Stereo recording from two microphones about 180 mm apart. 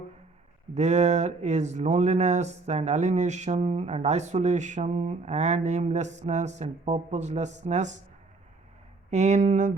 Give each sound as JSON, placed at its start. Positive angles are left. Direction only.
{"t": 0.7, "sound": "speech", "side_deg": -40}
{"t": 9.0, "sound": "speech", "side_deg": -40}